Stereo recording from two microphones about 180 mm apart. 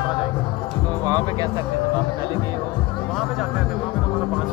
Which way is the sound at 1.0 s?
20° right (ahead or behind).